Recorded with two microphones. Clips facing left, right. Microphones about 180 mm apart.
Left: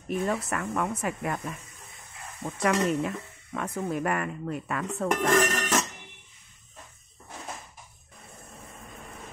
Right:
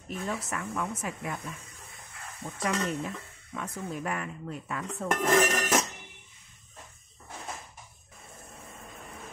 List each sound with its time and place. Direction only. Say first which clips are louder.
0.3 s speech: left 5 dB; 60° left (ahead or behind)
5.0 s speech: left 1 dB; centre (ahead or behind)